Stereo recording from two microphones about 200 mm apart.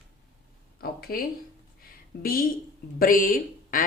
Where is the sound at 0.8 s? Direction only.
50° left (ahead or behind).